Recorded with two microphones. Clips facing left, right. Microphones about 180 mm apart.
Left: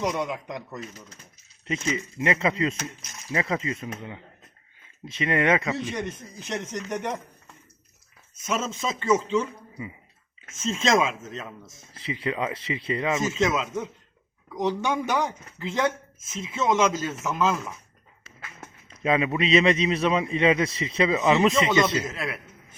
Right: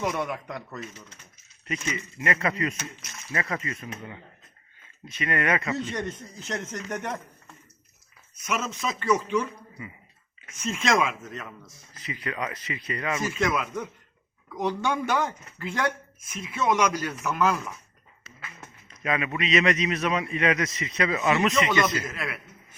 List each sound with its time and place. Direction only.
0.0 s a man's voice: 15° left (ahead or behind)
8.4 s speech: 25° left (ahead or behind)
19.0 s speech: 25° left (ahead or behind)